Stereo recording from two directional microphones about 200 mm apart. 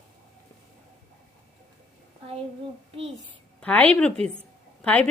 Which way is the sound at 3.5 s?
5° left (ahead or behind).